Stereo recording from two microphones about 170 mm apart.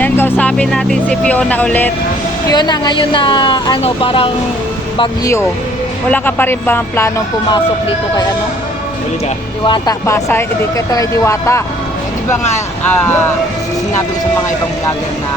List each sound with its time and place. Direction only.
0.0 s speech: 10° left (ahead or behind)
2.5 s speech: 25° left (ahead or behind)
4.9 s speech: 20° left (ahead or behind)
9.6 s speech: 30° left (ahead or behind)
10.1 s speech: 15° left (ahead or behind)